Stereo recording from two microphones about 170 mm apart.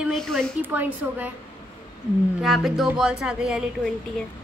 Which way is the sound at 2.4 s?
Centre (ahead or behind).